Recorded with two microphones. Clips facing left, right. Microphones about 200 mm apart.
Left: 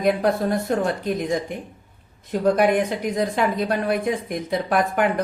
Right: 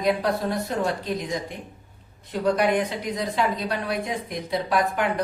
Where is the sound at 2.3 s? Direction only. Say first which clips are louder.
Left 3 dB; 50° left (ahead or behind).